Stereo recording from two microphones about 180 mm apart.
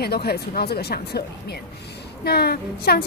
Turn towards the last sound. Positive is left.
turn(degrees=60)  # may be behind; listen again after turning